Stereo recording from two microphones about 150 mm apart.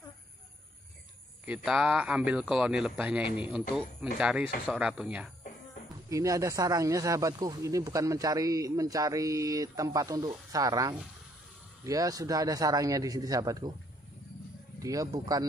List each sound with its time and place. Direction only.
1.4 s speech: 5° right (ahead or behind)
6.0 s speech: 20° right (ahead or behind)
14.8 s speech: 25° right (ahead or behind)